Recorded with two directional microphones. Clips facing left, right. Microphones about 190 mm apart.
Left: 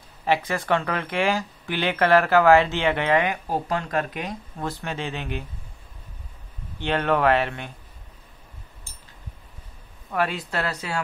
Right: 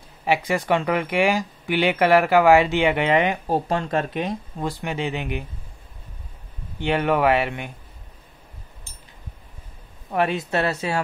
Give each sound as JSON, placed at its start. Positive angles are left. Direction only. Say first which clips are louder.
{"t": 0.2, "sound": "speech", "louder": "right 2 dB", "side_deg": -15}
{"t": 4.6, "sound": "speech", "louder": "right 3 dB", "side_deg": -15}
{"t": 6.8, "sound": "speech", "louder": "right 2 dB", "side_deg": -10}
{"t": 10.1, "sound": "speech", "louder": "right 4 dB", "side_deg": -20}